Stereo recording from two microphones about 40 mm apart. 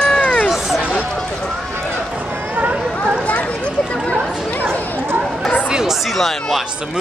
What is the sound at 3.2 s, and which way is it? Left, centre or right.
Chatter, left.